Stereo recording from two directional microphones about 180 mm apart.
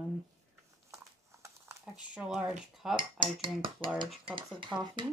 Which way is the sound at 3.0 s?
25° right (ahead or behind).